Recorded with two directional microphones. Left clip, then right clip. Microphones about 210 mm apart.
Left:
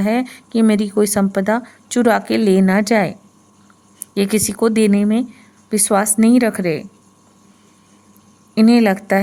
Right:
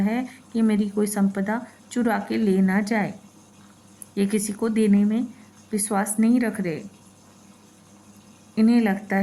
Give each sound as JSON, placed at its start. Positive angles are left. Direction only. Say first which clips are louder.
{"t": 0.0, "sound": "speech", "louder": "left 8 dB", "side_deg": 55}
{"t": 8.5, "sound": "speech", "louder": "left 8 dB", "side_deg": 55}